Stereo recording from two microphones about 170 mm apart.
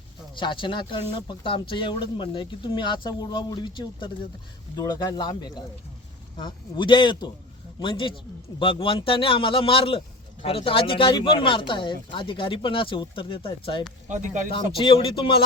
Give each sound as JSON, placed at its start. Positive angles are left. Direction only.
{"t": 0.3, "sound": "speech", "side_deg": 30}
{"t": 14.1, "sound": "speech", "side_deg": -45}
{"t": 14.8, "sound": "speech", "side_deg": 30}